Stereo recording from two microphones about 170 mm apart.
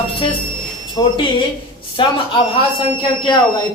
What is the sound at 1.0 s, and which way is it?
Speech, 30° left (ahead or behind).